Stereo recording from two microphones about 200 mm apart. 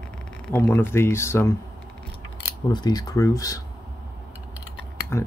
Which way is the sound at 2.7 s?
20° left (ahead or behind).